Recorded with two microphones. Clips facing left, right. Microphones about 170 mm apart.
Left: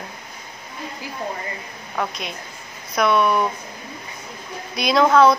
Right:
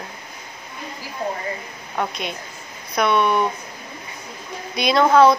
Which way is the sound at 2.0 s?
Centre (ahead or behind).